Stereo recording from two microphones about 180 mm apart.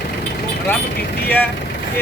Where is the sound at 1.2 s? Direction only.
10° left (ahead or behind).